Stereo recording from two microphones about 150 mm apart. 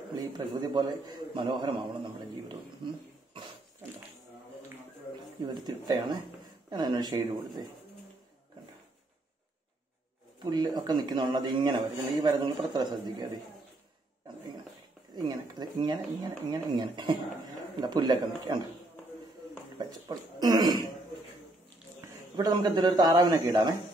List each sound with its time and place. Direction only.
0.1 s a man's voice: 30° right (ahead or behind)
2.8 s a man's voice: 35° right (ahead or behind)
5.5 s speech: 30° right (ahead or behind)
10.4 s speech: 30° right (ahead or behind)
15.1 s speech: 30° right (ahead or behind)
19.8 s a sound: 30° right (ahead or behind)
22.4 s speech: 25° right (ahead or behind)